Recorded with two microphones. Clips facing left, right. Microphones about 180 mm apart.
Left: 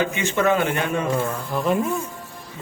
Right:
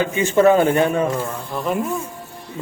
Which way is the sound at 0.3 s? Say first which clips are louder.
Right 7 dB; 35° right (ahead or behind).